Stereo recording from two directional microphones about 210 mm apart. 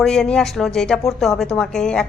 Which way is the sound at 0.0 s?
5° left (ahead or behind).